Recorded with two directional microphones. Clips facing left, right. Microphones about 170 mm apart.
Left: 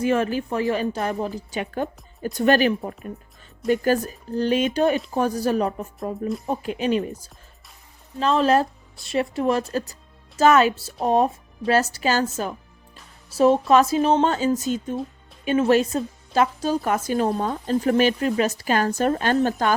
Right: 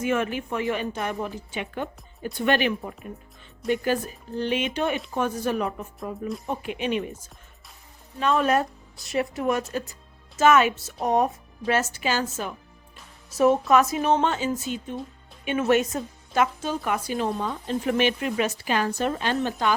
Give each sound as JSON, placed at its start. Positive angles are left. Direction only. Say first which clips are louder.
{"t": 0.0, "sound": "a woman's voice", "louder": "left 4 dB", "side_deg": 35}